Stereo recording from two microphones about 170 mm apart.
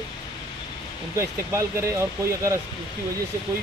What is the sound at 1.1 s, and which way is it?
Speech, 15° right (ahead or behind).